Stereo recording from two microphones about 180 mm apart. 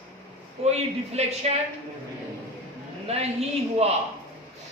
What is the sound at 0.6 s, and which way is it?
Speech, 35° right (ahead or behind).